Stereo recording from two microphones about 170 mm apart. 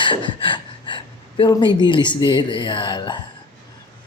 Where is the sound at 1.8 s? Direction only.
30° left (ahead or behind).